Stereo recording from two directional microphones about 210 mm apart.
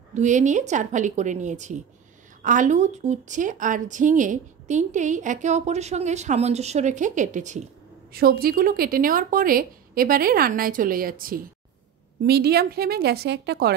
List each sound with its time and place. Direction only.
0.1 s a woman's voice: 35° right (ahead or behind); by 13.7 s 50° right (ahead or behind)